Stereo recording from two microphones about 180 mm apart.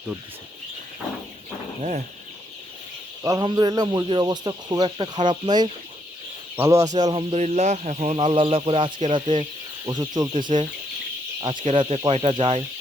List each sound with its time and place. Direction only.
3.2 s speech: 20° right (ahead or behind)
7.1 s speech: 30° right (ahead or behind)